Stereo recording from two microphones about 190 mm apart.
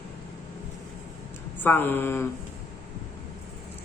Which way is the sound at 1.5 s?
10° left (ahead or behind).